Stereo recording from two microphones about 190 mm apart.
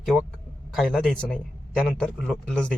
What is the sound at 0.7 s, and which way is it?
A man's voice, centre (ahead or behind).